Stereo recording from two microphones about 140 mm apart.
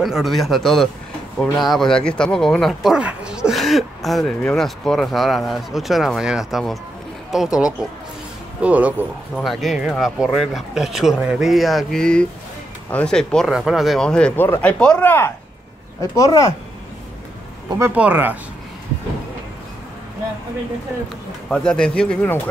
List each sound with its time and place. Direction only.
0.0 s speech: centre (ahead or behind)
9.4 s speech: centre (ahead or behind); by 16.5 s 25° left (ahead or behind)
17.7 s speech: 15° right (ahead or behind)
21.5 s speech: 5° left (ahead or behind)